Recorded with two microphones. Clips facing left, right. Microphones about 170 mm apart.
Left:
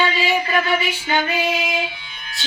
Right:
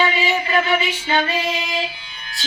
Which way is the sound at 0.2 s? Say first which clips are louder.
Left 1 dB; 10° left (ahead or behind).